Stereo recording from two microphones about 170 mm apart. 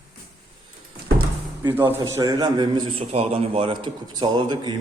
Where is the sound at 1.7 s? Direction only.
15° right (ahead or behind).